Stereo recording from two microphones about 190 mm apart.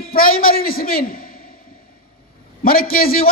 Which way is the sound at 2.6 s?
50° left (ahead or behind).